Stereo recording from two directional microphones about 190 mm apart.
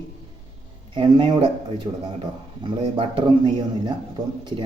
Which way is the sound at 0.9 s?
25° right (ahead or behind).